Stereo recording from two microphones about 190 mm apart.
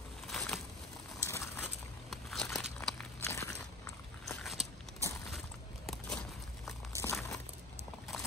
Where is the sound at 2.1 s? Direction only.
Centre (ahead or behind).